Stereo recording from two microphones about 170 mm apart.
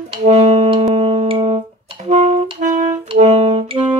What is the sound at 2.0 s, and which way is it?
Music, 45° right (ahead or behind).